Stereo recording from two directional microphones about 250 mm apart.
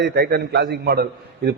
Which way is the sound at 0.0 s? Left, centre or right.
Right.